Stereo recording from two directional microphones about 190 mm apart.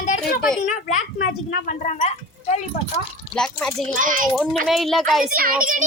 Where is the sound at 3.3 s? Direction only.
5° left (ahead or behind).